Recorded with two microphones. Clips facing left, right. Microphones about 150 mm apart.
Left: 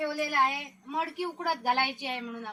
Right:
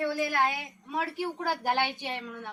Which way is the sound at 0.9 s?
20° left (ahead or behind).